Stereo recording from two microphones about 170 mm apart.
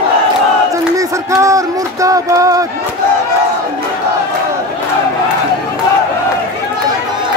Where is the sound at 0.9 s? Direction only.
20° right (ahead or behind).